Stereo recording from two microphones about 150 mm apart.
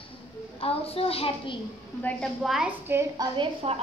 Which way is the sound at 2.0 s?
10° left (ahead or behind).